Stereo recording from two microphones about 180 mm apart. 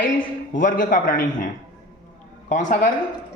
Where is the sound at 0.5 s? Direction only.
50° left (ahead or behind).